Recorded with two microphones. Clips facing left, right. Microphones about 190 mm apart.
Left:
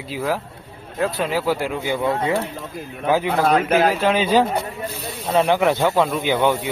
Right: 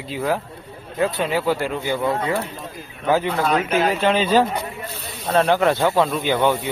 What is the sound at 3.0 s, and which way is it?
Speech, 10° left (ahead or behind).